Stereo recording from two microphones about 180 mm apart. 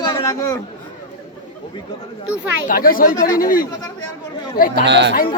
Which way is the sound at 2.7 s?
50° left (ahead or behind).